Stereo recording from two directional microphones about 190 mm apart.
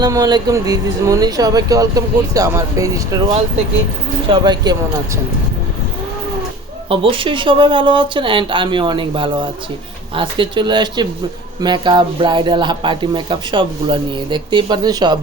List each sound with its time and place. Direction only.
0.0 s speech: 20° right (ahead or behind)
6.9 s speech: 25° right (ahead or behind)